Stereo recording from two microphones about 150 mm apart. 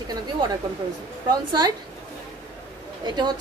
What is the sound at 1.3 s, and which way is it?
Speech, 25° right (ahead or behind).